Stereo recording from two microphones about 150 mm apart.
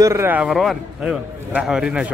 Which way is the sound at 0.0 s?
20° right (ahead or behind).